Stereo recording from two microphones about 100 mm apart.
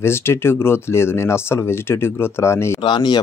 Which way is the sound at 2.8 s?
50° left (ahead or behind).